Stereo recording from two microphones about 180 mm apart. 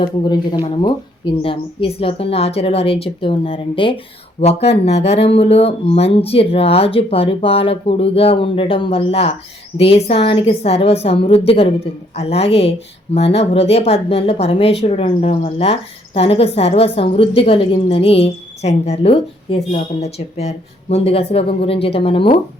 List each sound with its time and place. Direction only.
0.0 s a woman's voice: 25° left (ahead or behind)